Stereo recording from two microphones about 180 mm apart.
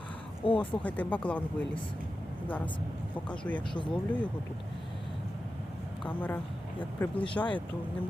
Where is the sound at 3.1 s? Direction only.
10° left (ahead or behind).